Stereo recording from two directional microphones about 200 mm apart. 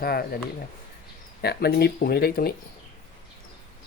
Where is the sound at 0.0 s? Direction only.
50° left (ahead or behind).